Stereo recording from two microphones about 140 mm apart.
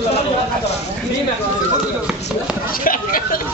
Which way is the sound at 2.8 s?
90° left.